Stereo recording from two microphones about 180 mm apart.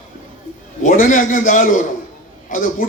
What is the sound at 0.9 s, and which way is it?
A man's voice, 45° left (ahead or behind).